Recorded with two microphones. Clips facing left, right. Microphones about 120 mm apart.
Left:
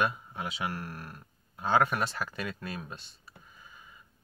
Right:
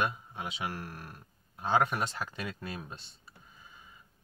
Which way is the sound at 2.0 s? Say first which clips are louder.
Left 2 dB; 20° right (ahead or behind).